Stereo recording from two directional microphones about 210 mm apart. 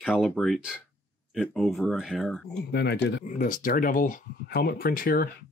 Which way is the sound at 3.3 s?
40° left (ahead or behind).